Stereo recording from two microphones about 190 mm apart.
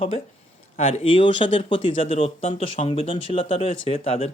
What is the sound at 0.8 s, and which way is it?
Speech, 30° left (ahead or behind).